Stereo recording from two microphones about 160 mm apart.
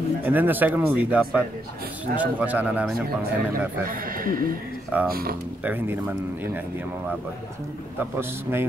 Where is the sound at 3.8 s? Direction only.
60° right (ahead or behind).